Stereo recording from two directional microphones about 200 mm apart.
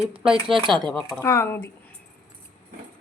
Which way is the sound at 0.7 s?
5° left (ahead or behind).